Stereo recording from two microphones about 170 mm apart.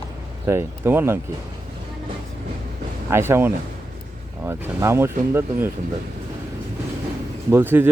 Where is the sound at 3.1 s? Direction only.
15° right (ahead or behind).